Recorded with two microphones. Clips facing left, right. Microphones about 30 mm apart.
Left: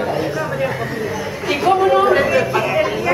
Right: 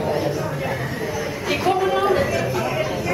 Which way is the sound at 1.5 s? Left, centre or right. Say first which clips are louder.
Left 6 dB; centre.